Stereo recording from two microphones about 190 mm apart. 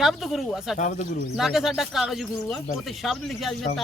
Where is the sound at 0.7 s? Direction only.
40° left (ahead or behind).